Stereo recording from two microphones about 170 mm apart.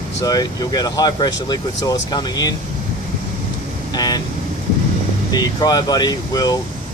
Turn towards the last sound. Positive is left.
turn(degrees=20)  # may be behind; listen again after turning